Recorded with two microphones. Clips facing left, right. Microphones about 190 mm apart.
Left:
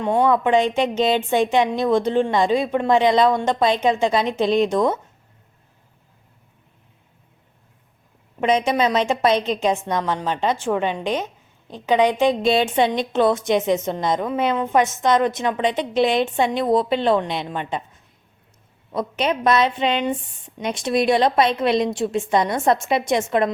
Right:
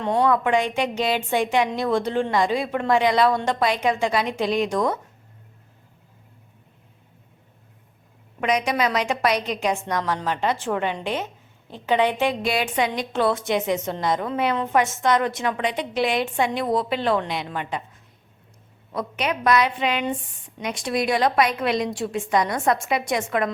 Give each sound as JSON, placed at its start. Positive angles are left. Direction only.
{"t": 0.0, "sound": "a woman's voice", "side_deg": 15}
{"t": 8.4, "sound": "a woman's voice", "side_deg": 25}
{"t": 18.9, "sound": "a woman's voice", "side_deg": 25}